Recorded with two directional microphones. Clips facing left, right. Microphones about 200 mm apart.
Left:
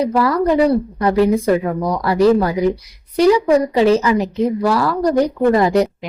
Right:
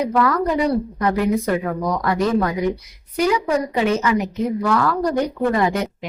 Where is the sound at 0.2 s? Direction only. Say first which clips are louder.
Left 5 dB; 35° left (ahead or behind).